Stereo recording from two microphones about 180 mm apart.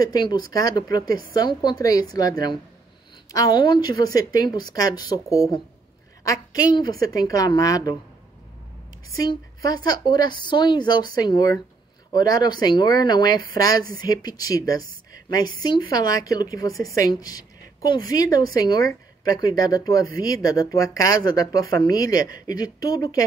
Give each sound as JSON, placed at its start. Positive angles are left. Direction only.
{"t": 0.0, "sound": "a woman's voice", "side_deg": 20}
{"t": 1.0, "sound": "a woman's voice", "side_deg": -55}
{"t": 1.3, "sound": "a woman's voice", "side_deg": 20}
{"t": 9.7, "sound": "a woman's voice", "side_deg": 20}